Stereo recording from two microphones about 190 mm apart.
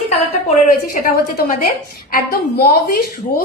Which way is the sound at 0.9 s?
45° left (ahead or behind).